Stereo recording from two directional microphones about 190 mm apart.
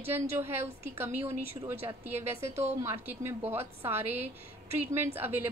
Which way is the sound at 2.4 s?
35° right (ahead or behind).